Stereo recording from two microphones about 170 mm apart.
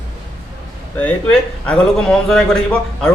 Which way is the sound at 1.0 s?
5° left (ahead or behind).